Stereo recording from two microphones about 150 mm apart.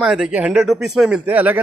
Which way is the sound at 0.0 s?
5° right (ahead or behind).